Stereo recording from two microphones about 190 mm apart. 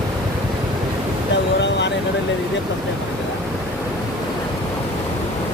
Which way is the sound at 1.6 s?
65° left (ahead or behind).